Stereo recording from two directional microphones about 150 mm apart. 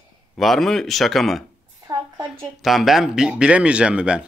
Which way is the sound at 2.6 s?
Centre (ahead or behind).